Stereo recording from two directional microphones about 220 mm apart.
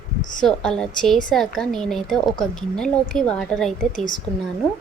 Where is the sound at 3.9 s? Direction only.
35° left (ahead or behind).